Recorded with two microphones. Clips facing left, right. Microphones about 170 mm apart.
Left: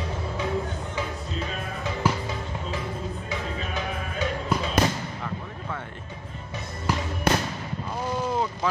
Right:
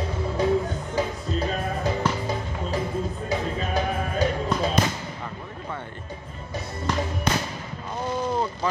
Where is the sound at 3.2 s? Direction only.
35° right (ahead or behind).